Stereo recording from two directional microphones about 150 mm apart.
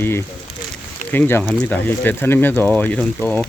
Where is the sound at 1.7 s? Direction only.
15° left (ahead or behind).